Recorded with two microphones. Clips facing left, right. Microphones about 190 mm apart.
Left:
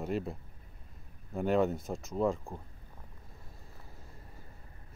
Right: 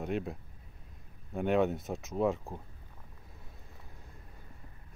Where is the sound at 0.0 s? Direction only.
Centre (ahead or behind).